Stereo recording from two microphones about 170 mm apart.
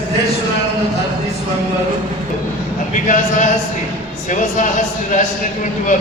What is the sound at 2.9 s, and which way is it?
Speech, 45° left (ahead or behind).